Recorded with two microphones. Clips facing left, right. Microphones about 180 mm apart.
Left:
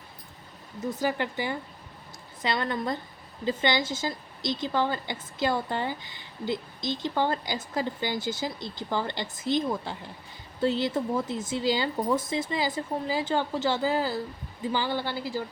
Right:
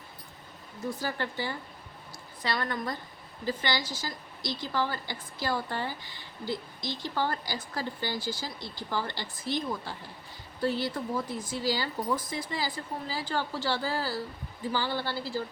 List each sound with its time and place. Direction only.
0.9 s a woman's voice: 20° left (ahead or behind)